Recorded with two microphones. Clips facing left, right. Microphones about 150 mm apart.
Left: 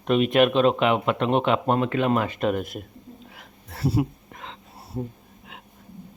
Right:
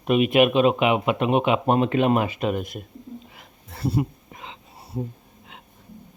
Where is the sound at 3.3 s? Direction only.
5° left (ahead or behind).